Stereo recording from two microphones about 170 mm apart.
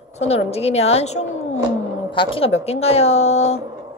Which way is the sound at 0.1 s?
40° left (ahead or behind).